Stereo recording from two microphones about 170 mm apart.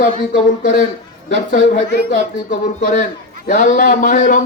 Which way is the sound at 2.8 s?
50° left (ahead or behind).